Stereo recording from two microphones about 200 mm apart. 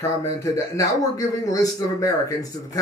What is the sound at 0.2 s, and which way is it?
A man's voice, 15° left (ahead or behind).